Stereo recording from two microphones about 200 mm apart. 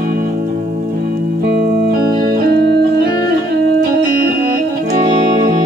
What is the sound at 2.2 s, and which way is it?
Music, 55° right (ahead or behind).